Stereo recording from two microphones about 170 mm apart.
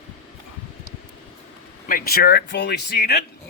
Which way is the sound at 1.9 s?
60° left (ahead or behind).